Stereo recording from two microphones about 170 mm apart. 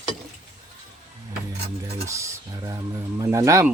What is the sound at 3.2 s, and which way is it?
Speech, 20° right (ahead or behind).